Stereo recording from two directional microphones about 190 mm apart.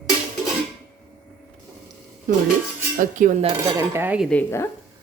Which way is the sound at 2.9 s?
40° right (ahead or behind).